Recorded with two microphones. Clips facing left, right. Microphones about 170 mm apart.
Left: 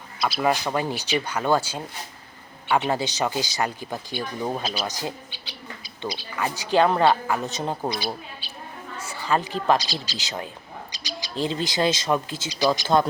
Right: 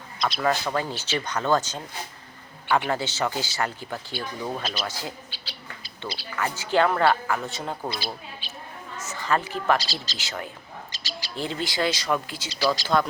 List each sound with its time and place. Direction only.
0.2 s speech: 5° left (ahead or behind)
0.4 s speech: 15° left (ahead or behind)
10.9 s bird: 15° left (ahead or behind)
11.4 s speech: 20° left (ahead or behind)